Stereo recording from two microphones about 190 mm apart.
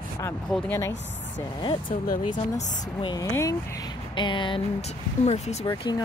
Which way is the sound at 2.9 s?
20° left (ahead or behind).